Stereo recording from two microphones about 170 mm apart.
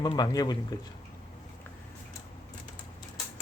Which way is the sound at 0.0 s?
25° left (ahead or behind).